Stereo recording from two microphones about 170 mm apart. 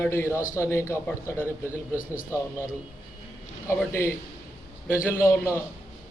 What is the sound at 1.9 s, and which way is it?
Speech, 55° left (ahead or behind).